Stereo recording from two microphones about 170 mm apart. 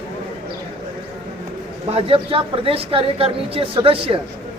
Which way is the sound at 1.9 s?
35° right (ahead or behind).